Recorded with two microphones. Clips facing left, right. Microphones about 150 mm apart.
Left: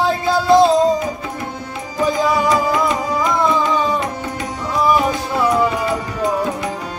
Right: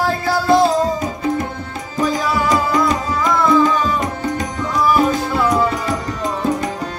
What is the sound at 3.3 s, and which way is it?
Music, 20° left (ahead or behind).